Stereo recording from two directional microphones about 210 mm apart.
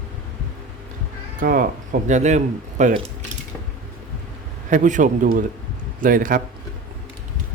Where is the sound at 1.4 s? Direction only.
40° right (ahead or behind).